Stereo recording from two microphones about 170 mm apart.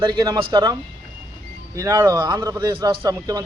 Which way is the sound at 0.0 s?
25° right (ahead or behind).